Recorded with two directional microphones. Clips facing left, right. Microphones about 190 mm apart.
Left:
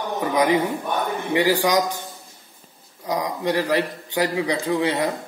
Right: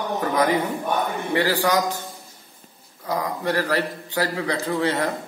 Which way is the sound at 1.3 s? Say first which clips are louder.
Left 2 dB; 15° left (ahead or behind).